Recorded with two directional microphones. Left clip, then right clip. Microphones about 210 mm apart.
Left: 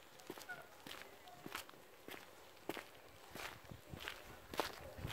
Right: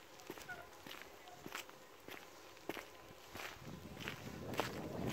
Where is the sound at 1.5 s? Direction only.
Centre (ahead or behind).